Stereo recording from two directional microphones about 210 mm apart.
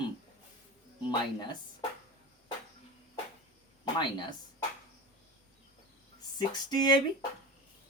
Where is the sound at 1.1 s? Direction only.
20° left (ahead or behind).